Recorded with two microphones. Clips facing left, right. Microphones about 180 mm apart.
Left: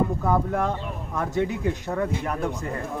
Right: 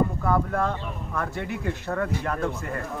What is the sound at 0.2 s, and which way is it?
Speech, 20° left (ahead or behind).